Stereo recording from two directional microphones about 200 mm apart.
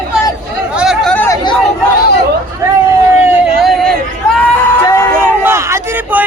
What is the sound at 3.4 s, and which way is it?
Hubbub, centre (ahead or behind).